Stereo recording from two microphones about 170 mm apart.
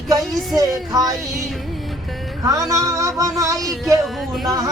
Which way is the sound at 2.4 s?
20° right (ahead or behind).